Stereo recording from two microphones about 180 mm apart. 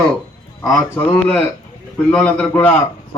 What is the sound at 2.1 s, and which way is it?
Speech, 10° left (ahead or behind).